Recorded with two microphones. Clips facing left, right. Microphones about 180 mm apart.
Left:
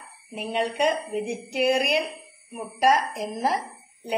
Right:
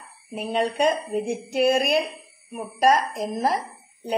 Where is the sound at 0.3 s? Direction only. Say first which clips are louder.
Right 2 dB; 45° right (ahead or behind).